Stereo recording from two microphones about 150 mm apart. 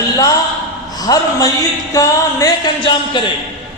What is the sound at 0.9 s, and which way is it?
A man's voice, 25° left (ahead or behind).